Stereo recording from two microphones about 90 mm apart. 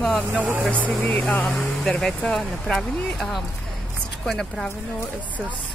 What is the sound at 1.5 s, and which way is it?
Speech, 5° left (ahead or behind).